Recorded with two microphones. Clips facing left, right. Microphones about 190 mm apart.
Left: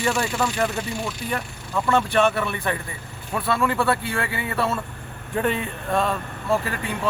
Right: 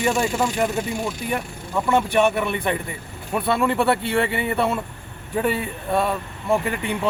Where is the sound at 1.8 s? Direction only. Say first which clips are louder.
Right 1 dB; 15° right (ahead or behind).